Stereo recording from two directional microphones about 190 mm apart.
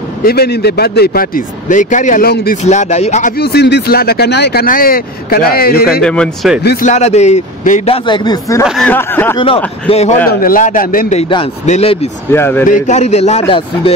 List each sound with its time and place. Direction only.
0.2 s speech: 55° left (ahead or behind)
2.6 s a man's voice: 35° left (ahead or behind)
3.3 s speech: 60° left (ahead or behind)
6.0 s speech: 5° left (ahead or behind)
6.6 s speech: 60° left (ahead or behind)
6.9 s a man's voice: 35° left (ahead or behind); by 8.6 s 20° left (ahead or behind)
8.6 s speech: centre (ahead or behind)
8.9 s speech: 10° left (ahead or behind)
9.8 s a man's voice: 35° left (ahead or behind)
10.2 s speech: 50° left (ahead or behind)
11.1 s a man's voice: 25° left (ahead or behind)
12.3 s speech: 10° left (ahead or behind)
12.6 s a man's voice: 40° left (ahead or behind)